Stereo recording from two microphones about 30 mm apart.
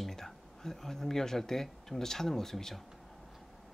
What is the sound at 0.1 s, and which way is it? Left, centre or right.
Speech, centre.